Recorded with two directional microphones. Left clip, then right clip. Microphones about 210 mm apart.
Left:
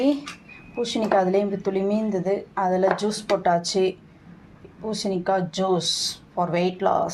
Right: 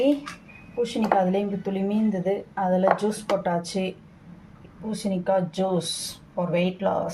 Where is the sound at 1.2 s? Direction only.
15° left (ahead or behind).